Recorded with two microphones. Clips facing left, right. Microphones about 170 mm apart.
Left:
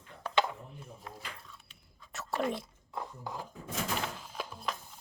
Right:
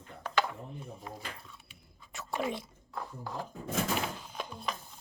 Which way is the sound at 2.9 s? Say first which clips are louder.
Even; 20° left (ahead or behind).